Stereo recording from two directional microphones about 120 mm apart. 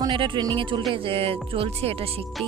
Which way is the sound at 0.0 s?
40° right (ahead or behind).